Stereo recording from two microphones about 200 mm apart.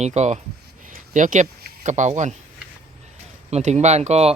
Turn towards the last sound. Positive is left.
turn(degrees=-35)  # may be behind; listen again after turning